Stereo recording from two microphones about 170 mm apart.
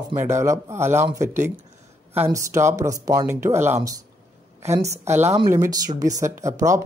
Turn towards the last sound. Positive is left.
turn(degrees=-20)  # may be behind; listen again after turning